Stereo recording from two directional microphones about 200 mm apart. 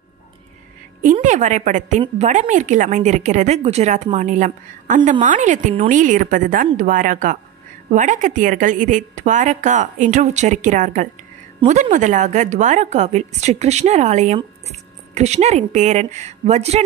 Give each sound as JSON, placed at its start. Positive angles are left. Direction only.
{"t": 1.1, "sound": "a woman's voice", "side_deg": -35}